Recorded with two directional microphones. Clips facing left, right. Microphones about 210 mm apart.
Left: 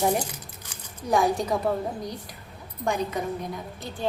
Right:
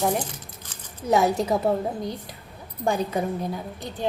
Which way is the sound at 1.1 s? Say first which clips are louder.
Right 2 dB; 25° right (ahead or behind).